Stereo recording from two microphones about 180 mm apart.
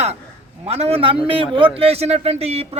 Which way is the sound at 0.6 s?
35° right (ahead or behind).